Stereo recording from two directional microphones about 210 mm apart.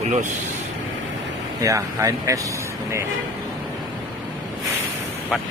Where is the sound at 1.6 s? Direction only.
15° right (ahead or behind).